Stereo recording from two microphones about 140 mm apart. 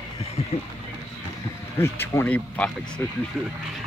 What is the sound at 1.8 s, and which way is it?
Speech, 15° left (ahead or behind).